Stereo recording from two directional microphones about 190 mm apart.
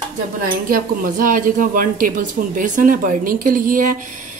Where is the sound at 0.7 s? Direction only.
50° right (ahead or behind).